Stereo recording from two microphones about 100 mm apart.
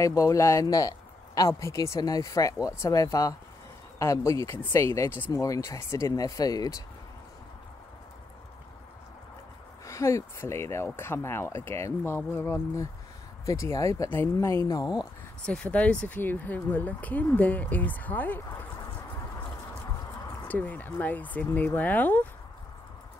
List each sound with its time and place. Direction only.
0.0 s speech: 35° left (ahead or behind)
9.8 s speech: 30° left (ahead or behind)
15.4 s speech: 10° left (ahead or behind)
20.4 s speech: 15° left (ahead or behind)